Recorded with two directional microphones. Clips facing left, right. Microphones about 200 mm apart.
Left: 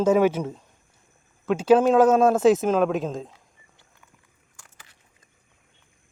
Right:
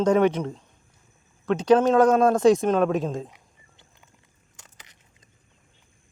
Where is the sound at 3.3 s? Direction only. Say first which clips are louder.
Even; 15° right (ahead or behind).